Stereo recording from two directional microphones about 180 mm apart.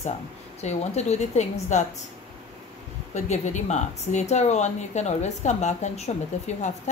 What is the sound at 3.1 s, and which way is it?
Speech, 40° left (ahead or behind).